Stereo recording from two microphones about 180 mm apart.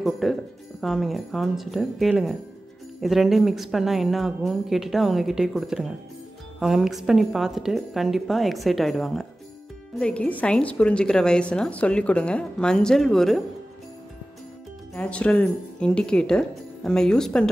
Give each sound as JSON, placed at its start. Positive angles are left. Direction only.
{"t": 0.0, "sound": "speech", "side_deg": 0}
{"t": 15.0, "sound": "speech", "side_deg": 5}